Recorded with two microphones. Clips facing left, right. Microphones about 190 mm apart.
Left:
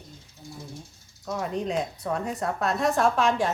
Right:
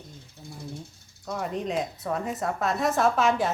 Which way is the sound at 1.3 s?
Centre (ahead or behind).